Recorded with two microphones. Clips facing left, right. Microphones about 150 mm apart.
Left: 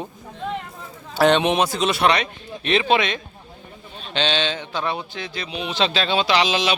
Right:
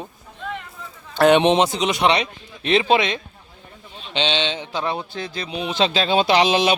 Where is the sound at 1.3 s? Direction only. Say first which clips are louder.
Right 5 dB; 20° right (ahead or behind); by 6.2 s 40° right (ahead or behind).